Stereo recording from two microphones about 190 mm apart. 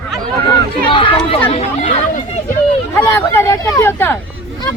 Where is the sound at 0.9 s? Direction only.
25° left (ahead or behind).